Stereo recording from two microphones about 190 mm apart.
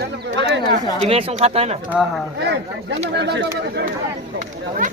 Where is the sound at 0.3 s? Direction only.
70° right (ahead or behind).